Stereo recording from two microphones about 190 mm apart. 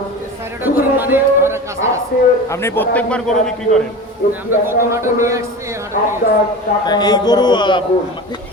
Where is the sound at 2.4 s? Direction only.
15° left (ahead or behind).